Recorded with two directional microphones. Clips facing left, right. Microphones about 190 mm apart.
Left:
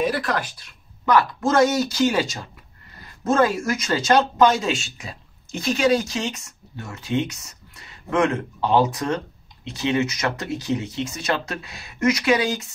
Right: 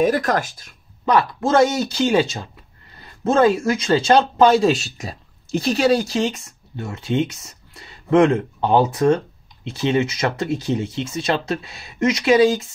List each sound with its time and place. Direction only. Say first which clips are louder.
0.0 s speech: right 5 dB; 45° right (ahead or behind)
1.0 s speech: right 1 dB; 25° right (ahead or behind)